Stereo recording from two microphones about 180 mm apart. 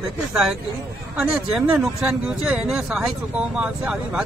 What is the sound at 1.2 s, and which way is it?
Speech, 5° right (ahead or behind).